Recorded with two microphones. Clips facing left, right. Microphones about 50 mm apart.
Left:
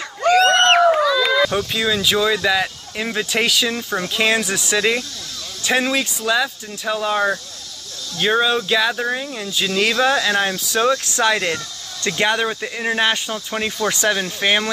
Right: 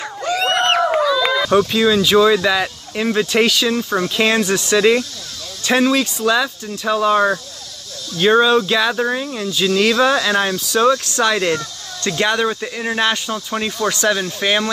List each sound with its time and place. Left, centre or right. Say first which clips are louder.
0.3 s a sound: left 4 dB; left
1.7 s speech: right 5 dB; centre
10.7 s speech: right 5 dB; centre